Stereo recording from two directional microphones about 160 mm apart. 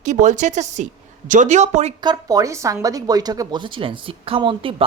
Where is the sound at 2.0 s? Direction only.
20° right (ahead or behind).